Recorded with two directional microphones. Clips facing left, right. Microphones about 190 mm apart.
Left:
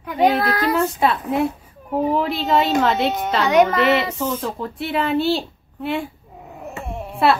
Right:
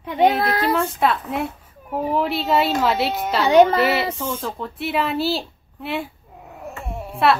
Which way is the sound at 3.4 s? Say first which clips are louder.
Right 2 dB; 30° right (ahead or behind).